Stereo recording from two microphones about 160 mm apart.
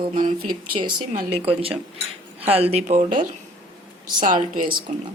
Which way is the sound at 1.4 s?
35° right (ahead or behind).